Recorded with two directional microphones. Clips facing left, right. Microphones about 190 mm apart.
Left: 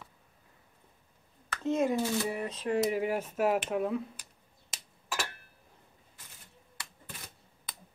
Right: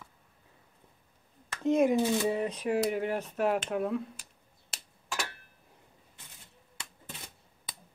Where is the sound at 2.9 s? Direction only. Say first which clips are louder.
Left 1 dB; 5° left (ahead or behind).